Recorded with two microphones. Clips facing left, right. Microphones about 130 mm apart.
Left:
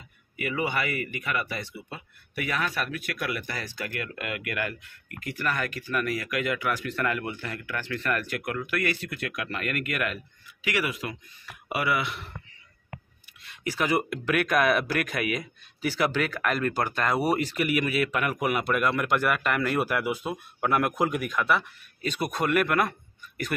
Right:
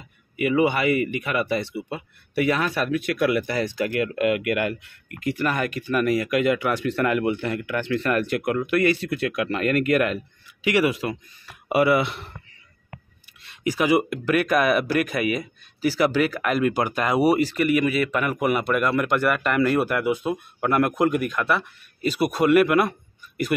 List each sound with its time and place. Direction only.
0.4 s speech: 20° right (ahead or behind)
13.7 s speech: 10° right (ahead or behind)